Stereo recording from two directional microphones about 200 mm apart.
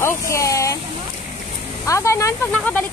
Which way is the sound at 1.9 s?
15° left (ahead or behind).